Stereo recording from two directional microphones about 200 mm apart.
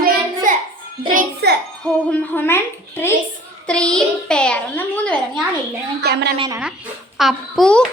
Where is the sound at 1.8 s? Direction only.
5° left (ahead or behind).